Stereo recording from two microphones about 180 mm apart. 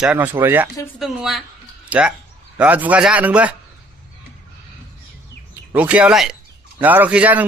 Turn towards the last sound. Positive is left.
turn(degrees=-5)  # may be behind; listen again after turning